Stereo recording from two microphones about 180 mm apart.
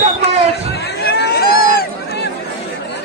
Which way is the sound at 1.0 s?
65° left (ahead or behind).